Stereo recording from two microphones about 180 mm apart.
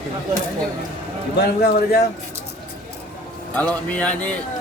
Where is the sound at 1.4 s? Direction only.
60° left (ahead or behind).